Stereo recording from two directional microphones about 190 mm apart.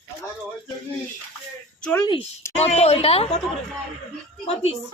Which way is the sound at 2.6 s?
35° left (ahead or behind).